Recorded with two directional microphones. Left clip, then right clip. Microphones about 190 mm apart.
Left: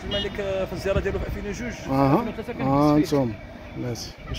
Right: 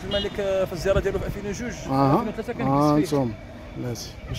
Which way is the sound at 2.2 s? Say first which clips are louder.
Right 2 dB; 40° right (ahead or behind).